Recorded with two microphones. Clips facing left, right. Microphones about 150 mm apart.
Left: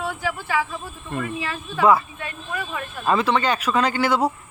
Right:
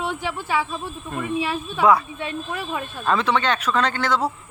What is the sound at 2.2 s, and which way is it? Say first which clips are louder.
Speech: right 2 dB; 25° right (ahead or behind).